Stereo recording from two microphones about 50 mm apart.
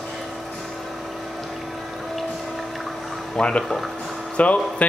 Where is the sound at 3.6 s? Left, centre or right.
Centre.